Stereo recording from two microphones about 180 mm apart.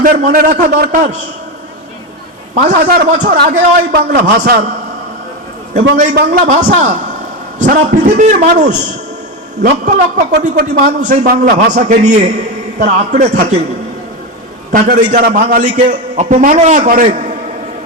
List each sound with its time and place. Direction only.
0.0 s a man's voice: 55° right (ahead or behind)
2.6 s a man's voice: 55° right (ahead or behind)
3.5 s a man's voice: 45° right (ahead or behind)
4.2 s a man's voice: 70° right (ahead or behind)
6.1 s a man's voice: 50° right (ahead or behind)
7.8 s a man's voice: 55° right (ahead or behind)
8.2 s a man's voice: 40° right (ahead or behind)
14.7 s a man's voice: 50° right (ahead or behind)